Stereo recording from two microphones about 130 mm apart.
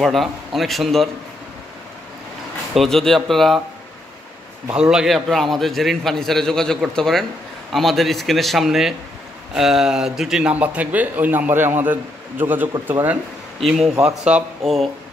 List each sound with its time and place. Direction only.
0.0 s a man's voice: centre (ahead or behind)
2.7 s a man's voice: centre (ahead or behind)
4.7 s a man's voice: 5° right (ahead or behind)
13.6 s a man's voice: centre (ahead or behind)